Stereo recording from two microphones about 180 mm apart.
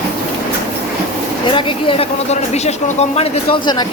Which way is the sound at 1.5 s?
30° left (ahead or behind).